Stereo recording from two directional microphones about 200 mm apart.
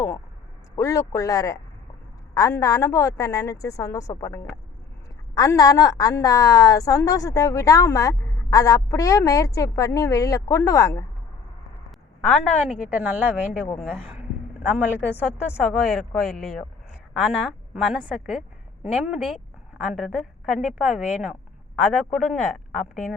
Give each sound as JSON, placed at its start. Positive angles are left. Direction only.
{"t": 0.8, "sound": "a woman's voice", "side_deg": 15}
{"t": 12.2, "sound": "a woman's voice", "side_deg": 0}
{"t": 13.7, "sound": "speech", "side_deg": 5}
{"t": 14.6, "sound": "speech", "side_deg": -5}